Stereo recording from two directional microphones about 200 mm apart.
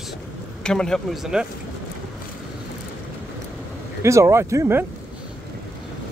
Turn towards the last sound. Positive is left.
turn(degrees=-15)  # may be behind; listen again after turning